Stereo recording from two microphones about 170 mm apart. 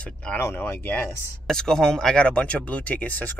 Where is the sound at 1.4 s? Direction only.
5° left (ahead or behind).